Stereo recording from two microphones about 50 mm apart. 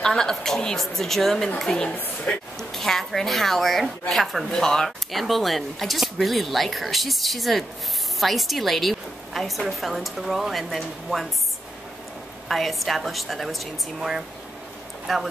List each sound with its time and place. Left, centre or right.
0.0 s a woman's voice: centre
2.3 s speech: left
2.7 s speech: centre
4.5 s speech: centre
12.4 s speech: centre